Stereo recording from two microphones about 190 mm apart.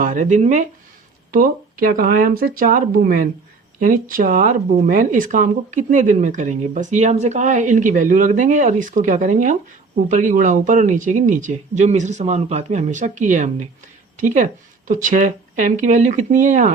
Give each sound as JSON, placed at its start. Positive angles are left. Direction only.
{"t": 0.0, "sound": "speech", "side_deg": -40}